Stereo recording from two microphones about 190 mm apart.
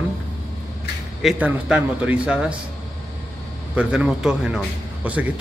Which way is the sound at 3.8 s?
5° right (ahead or behind).